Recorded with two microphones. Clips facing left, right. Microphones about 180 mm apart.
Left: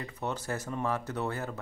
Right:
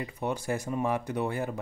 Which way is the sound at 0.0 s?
10° right (ahead or behind).